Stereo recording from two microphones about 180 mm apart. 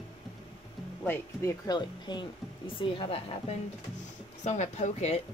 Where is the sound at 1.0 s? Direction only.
15° left (ahead or behind); by 5.2 s 40° left (ahead or behind).